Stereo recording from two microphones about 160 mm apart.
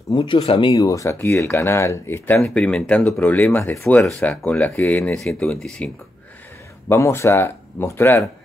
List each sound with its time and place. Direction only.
0.1 s speech: 30° left (ahead or behind); by 5.9 s 5° left (ahead or behind)
6.9 s speech: 15° left (ahead or behind)